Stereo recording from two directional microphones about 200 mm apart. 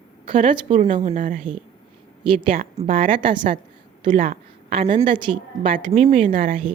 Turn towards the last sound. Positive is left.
turn(degrees=-30)  # may be behind; listen again after turning